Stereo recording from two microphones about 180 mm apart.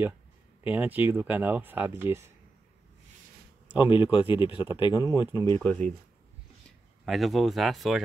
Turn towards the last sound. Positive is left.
turn(degrees=0)  # may be behind; listen again after turning